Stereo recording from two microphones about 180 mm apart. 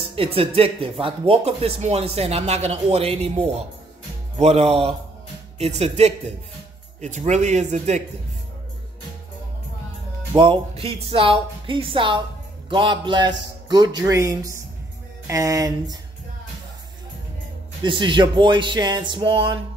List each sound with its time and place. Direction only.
0.1 s speech: 30° right (ahead or behind)
10.3 s speech: 30° right (ahead or behind)
17.8 s speech: 25° right (ahead or behind)